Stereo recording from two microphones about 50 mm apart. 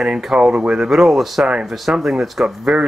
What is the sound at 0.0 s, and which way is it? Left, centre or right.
Speech, centre.